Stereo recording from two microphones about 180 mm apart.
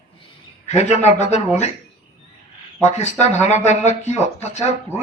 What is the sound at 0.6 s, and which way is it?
A man's voice, 40° left (ahead or behind).